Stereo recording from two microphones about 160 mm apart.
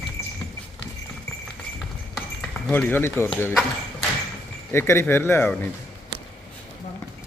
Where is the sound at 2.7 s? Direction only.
10° left (ahead or behind).